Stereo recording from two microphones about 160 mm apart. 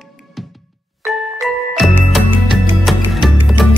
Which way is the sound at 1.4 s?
Centre (ahead or behind).